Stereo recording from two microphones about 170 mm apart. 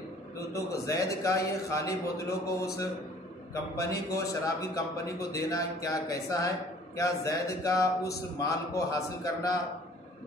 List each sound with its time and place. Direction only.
0.5 s a man's voice: 20° left (ahead or behind)